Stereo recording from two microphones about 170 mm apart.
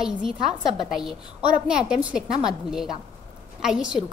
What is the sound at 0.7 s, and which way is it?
A woman's voice, centre (ahead or behind).